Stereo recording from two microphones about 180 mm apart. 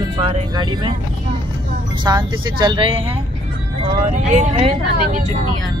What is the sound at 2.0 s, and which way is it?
Speech, 25° right (ahead or behind).